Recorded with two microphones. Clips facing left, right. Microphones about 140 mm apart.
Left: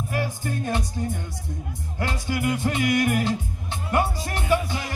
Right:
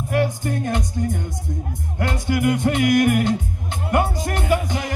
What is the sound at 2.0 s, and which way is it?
Music, 60° right (ahead or behind).